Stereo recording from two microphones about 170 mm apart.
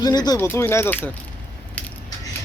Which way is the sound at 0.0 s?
25° left (ahead or behind).